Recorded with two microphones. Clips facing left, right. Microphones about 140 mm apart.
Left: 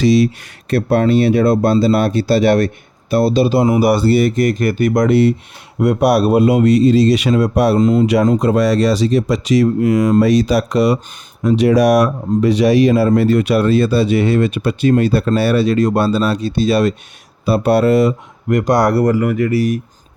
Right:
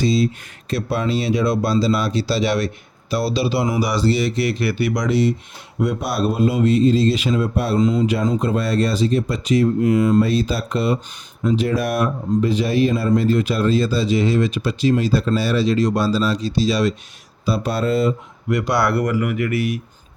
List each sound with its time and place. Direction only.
0.0 s speech: 80° left
0.7 s speech: 55° left (ahead or behind)
5.8 s speech: 70° left (ahead or behind)
7.8 s speech: 50° left (ahead or behind)
8.0 s speech: 70° left (ahead or behind)
18.4 s speech: 45° left (ahead or behind)